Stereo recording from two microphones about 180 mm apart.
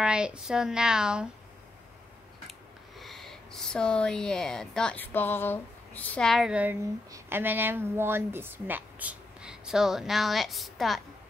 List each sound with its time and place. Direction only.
0.0 s speech: 5° right (ahead or behind)
3.0 s speech: centre (ahead or behind)